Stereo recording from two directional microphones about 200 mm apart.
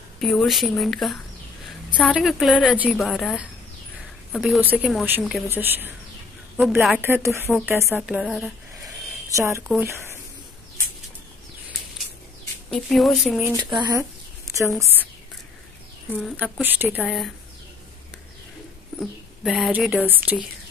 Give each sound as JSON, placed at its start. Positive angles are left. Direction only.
{"t": 0.2, "sound": "a woman's voice", "side_deg": 0}
{"t": 5.5, "sound": "a woman's voice", "side_deg": -10}
{"t": 8.8, "sound": "a sound", "side_deg": -15}
{"t": 9.7, "sound": "a woman's voice", "side_deg": -10}
{"t": 12.7, "sound": "a woman's voice", "side_deg": 0}
{"t": 13.6, "sound": "speech", "side_deg": -20}
{"t": 16.1, "sound": "a woman's voice", "side_deg": 0}
{"t": 18.9, "sound": "a woman's voice", "side_deg": 0}